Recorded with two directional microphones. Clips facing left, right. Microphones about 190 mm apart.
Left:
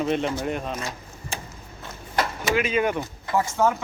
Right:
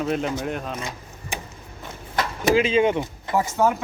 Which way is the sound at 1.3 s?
15° right (ahead or behind).